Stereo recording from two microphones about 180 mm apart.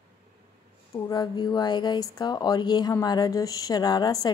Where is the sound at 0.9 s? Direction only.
20° left (ahead or behind).